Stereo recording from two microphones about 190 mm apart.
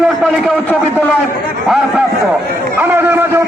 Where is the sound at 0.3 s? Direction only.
5° right (ahead or behind).